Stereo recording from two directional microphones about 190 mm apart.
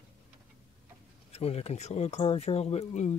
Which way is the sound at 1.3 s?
35° left (ahead or behind).